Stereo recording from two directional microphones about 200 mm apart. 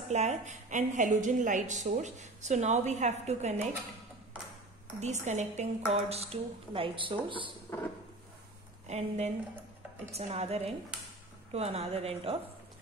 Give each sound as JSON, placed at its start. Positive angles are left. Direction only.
{"t": 0.1, "sound": "a woman's voice", "side_deg": -35}
{"t": 5.0, "sound": "a woman's voice", "side_deg": -35}
{"t": 8.8, "sound": "a woman's voice", "side_deg": -35}